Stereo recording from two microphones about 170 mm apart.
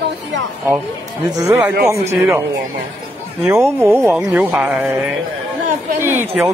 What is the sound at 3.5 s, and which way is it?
Speech, 15° right (ahead or behind).